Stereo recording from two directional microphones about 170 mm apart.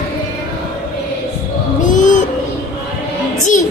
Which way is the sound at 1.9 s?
45° left (ahead or behind).